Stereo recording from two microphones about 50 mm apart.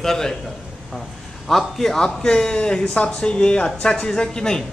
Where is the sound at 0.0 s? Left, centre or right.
Centre.